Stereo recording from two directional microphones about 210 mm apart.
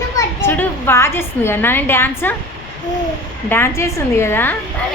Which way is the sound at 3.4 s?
10° left (ahead or behind).